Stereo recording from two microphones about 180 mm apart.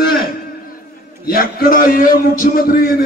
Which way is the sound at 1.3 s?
55° left (ahead or behind).